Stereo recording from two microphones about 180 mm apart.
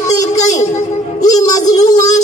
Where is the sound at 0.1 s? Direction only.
20° left (ahead or behind).